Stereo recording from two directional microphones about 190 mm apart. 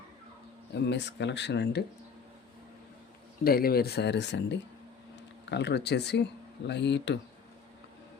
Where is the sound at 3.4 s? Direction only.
50° left (ahead or behind).